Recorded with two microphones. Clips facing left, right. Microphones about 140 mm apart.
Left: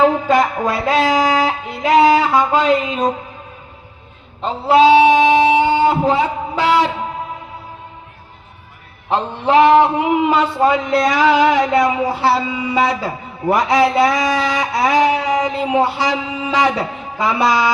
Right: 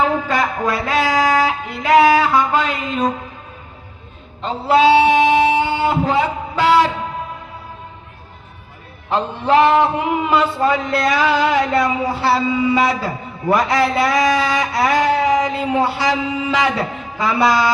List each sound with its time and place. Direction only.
0.3 s music: 20° left (ahead or behind)
4.4 s a sound: 20° left (ahead or behind)
9.0 s a man's voice: 20° left (ahead or behind)